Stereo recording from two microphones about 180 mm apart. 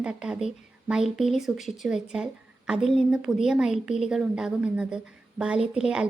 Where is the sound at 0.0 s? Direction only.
5° right (ahead or behind).